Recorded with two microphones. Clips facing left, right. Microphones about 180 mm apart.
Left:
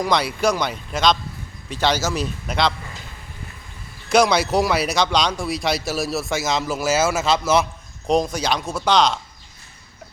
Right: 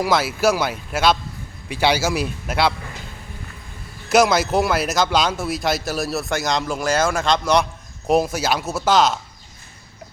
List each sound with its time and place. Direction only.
0.0 s a man's voice: 5° right (ahead or behind)
4.1 s speech: 5° right (ahead or behind)